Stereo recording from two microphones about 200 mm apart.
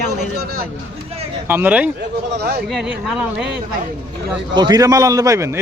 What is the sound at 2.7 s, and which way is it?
Speech, centre (ahead or behind).